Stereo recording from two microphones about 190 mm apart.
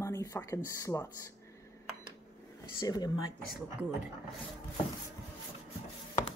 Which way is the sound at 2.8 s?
20° left (ahead or behind).